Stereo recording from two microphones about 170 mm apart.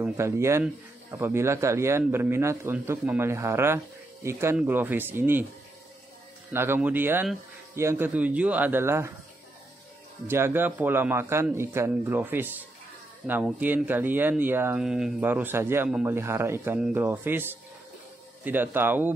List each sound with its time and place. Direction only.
0.0 s speech: 15° right (ahead or behind)
6.5 s speech: 15° right (ahead or behind)
10.2 s speech: 15° right (ahead or behind)